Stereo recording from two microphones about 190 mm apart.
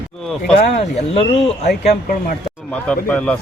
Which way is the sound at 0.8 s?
30° left (ahead or behind).